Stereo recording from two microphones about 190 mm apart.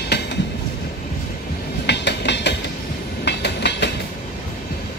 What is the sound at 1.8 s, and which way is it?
Music, 65° left (ahead or behind).